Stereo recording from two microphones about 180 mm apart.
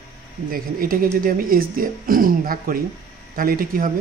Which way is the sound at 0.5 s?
55° right (ahead or behind).